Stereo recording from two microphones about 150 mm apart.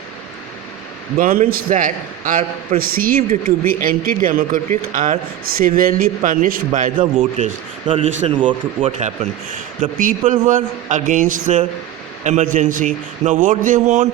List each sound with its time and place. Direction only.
1.2 s a man's voice: 75° right (ahead or behind)
6.9 s a man's voice: 35° right (ahead or behind)
9.0 s a man's voice: 55° right (ahead or behind)